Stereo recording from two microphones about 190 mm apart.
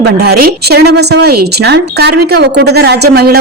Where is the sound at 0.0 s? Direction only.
60° right (ahead or behind).